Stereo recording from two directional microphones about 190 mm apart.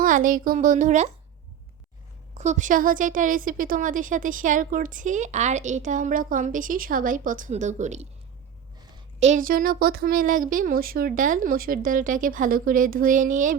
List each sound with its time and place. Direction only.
0.0 s a woman's voice: 45° right (ahead or behind)
2.3 s a woman's voice: 40° right (ahead or behind)
9.2 s a woman's voice: 45° right (ahead or behind)